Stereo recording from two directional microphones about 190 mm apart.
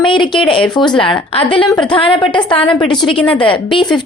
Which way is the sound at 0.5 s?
25° left (ahead or behind).